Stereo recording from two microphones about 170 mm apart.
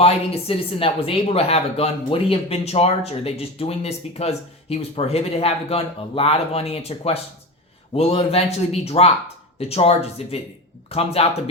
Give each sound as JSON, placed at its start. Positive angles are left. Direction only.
{"t": 0.0, "sound": "a woman's voice", "side_deg": 35}